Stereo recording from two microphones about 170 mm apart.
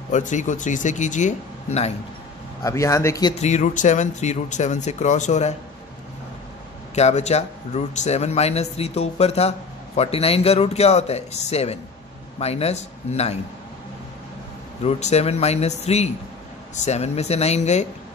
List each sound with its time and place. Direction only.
0.1 s speech: 45° left (ahead or behind)
2.6 s speech: 15° left (ahead or behind)
3.3 s speech: 45° left (ahead or behind)
7.0 s speech: 40° left (ahead or behind)
14.8 s speech: 40° left (ahead or behind)